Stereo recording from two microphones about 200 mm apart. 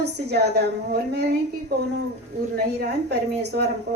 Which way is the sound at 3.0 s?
55° right (ahead or behind).